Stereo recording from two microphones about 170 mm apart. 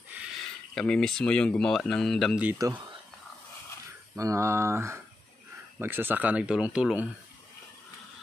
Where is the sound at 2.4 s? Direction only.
15° right (ahead or behind).